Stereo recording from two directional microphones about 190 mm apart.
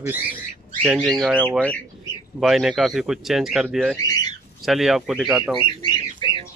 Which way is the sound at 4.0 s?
20° left (ahead or behind).